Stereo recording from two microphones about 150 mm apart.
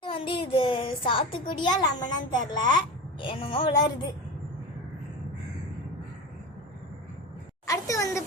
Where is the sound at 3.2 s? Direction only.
35° left (ahead or behind).